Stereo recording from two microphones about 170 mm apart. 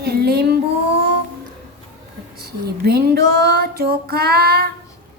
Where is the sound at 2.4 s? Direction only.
65° right (ahead or behind).